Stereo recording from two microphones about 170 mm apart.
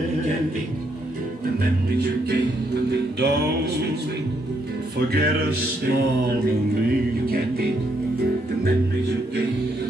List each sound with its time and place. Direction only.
2.7 s music: 75° right (ahead or behind)
4.9 s music: 70° right (ahead or behind)